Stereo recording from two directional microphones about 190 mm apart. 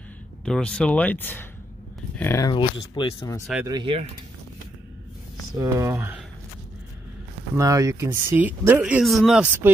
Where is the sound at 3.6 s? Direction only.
25° right (ahead or behind).